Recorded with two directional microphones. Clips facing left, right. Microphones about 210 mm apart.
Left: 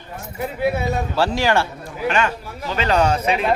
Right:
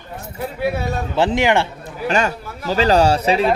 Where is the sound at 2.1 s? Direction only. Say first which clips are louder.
Right 1 dB; 40° right (ahead or behind).